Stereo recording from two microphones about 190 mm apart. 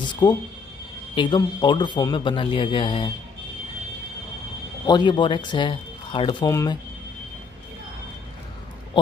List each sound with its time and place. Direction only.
0.1 s speech: 25° left (ahead or behind)
4.8 s speech: 25° left (ahead or behind)